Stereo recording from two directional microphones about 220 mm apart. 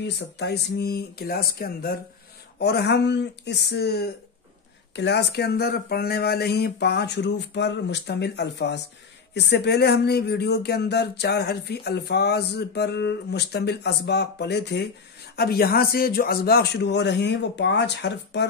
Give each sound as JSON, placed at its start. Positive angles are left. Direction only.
{"t": 0.0, "sound": "speech", "side_deg": 50}